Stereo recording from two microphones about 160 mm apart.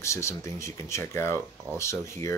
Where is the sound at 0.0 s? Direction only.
20° left (ahead or behind).